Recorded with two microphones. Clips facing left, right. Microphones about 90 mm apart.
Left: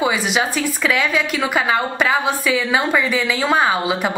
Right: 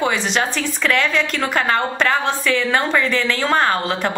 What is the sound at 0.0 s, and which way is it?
A woman's voice, 5° left (ahead or behind).